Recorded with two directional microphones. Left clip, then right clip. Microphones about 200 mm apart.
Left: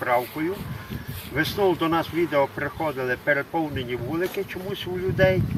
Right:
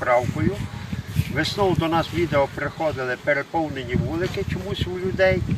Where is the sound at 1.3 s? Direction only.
Centre (ahead or behind).